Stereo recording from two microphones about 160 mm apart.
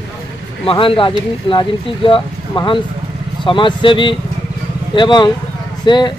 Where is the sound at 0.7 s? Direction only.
35° left (ahead or behind).